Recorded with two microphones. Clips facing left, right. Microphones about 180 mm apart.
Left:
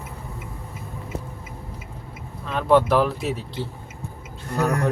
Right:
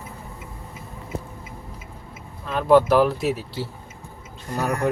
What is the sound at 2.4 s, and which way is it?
Speech, centre (ahead or behind).